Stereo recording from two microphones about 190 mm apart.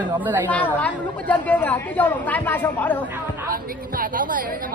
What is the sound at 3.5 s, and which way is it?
Speech, 50° right (ahead or behind).